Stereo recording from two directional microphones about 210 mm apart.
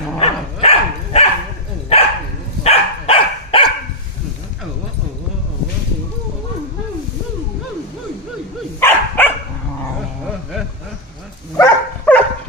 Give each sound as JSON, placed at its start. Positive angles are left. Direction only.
{"t": 0.2, "sound": "dog", "side_deg": 30}
{"t": 8.8, "sound": "dog", "side_deg": 10}
{"t": 11.5, "sound": "dog", "side_deg": 10}